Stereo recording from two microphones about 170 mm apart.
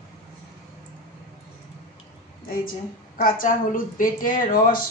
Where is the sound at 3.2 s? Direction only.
55° left (ahead or behind).